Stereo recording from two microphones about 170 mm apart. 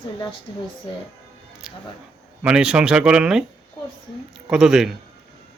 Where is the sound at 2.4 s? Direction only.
5° right (ahead or behind).